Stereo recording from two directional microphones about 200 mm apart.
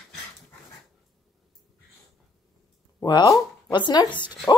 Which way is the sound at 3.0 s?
20° left (ahead or behind).